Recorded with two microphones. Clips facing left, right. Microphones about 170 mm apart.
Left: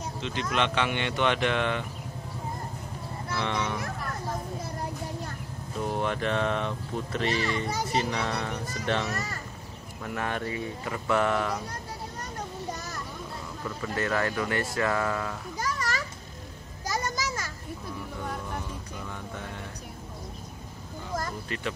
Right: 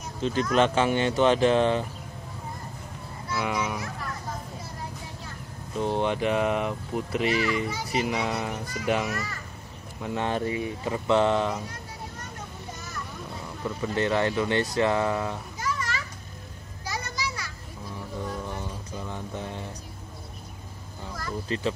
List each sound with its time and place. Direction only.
0.2 s speech: 40° right (ahead or behind)
3.3 s speech: 10° right (ahead or behind)
5.8 s speech: 30° right (ahead or behind)
6.0 s speech: 5° right (ahead or behind)
7.2 s speech: 35° left (ahead or behind)
8.0 s speech: 5° right (ahead or behind)
10.0 s speech: 25° right (ahead or behind)
13.7 s speech: 20° right (ahead or behind)
15.6 s a sound: 40° left (ahead or behind)
19.0 s a sound: 30° right (ahead or behind)
21.1 s a sound: 45° left (ahead or behind)
21.5 s speech: 30° right (ahead or behind)